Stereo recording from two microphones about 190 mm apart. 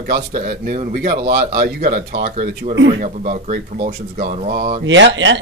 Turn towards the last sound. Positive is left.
turn(degrees=-70)  # may be behind; listen again after turning